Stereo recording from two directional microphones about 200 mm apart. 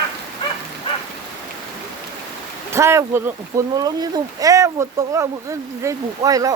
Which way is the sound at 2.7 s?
15° right (ahead or behind).